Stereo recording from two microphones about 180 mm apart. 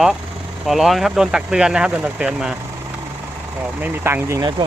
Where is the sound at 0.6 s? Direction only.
Centre (ahead or behind).